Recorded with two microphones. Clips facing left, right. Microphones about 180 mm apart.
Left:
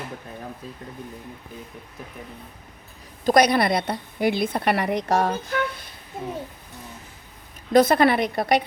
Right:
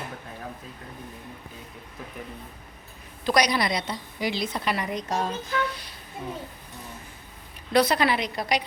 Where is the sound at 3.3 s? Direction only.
55° left (ahead or behind).